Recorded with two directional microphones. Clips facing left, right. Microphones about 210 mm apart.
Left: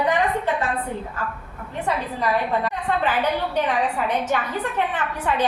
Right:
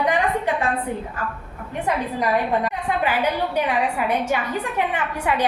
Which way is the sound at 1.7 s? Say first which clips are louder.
Right 2 dB; 15° right (ahead or behind).